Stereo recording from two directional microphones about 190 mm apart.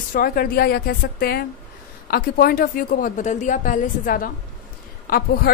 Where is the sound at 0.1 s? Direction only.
50° left (ahead or behind).